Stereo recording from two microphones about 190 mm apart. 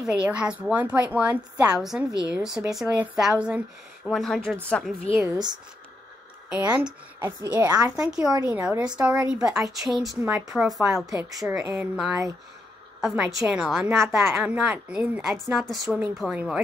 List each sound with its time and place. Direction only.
0.0 s a woman's voice: 5° right (ahead or behind)
5.1 s a woman's voice: 15° right (ahead or behind)
6.5 s a woman's voice: 5° right (ahead or behind)
7.5 s a woman's voice: 20° right (ahead or behind)
7.9 s a woman's voice: 5° right (ahead or behind)
11.5 s a woman's voice: 15° right (ahead or behind)